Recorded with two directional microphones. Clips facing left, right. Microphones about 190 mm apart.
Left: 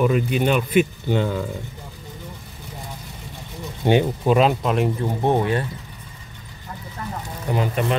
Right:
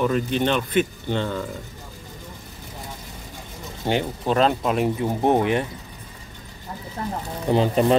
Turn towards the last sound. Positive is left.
turn(degrees=-30)  # may be behind; listen again after turning